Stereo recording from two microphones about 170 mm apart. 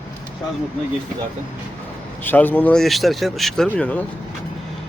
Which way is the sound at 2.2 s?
10° left (ahead or behind).